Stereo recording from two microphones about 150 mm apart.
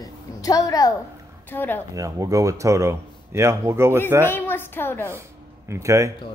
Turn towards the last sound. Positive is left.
turn(degrees=-20)  # may be behind; listen again after turning